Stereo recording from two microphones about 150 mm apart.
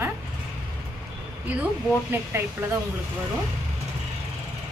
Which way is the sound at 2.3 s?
15° right (ahead or behind).